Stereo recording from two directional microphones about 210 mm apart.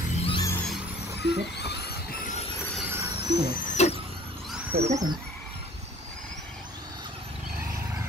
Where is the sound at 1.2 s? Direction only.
50° left (ahead or behind).